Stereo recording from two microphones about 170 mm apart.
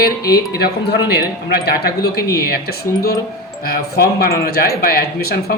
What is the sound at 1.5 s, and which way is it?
Speech, 65° left (ahead or behind).